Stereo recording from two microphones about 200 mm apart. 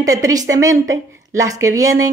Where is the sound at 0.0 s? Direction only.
15° right (ahead or behind).